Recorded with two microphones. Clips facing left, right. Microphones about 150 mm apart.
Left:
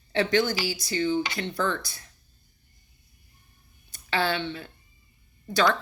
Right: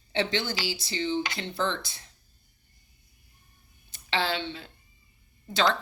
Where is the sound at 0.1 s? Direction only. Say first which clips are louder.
Left 5 dB; 25° right (ahead or behind).